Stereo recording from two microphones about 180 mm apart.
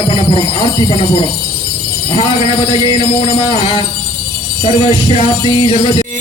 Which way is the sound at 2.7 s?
25° left (ahead or behind).